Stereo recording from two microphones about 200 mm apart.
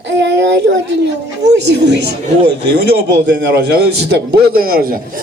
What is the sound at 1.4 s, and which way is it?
Speech, 60° right (ahead or behind).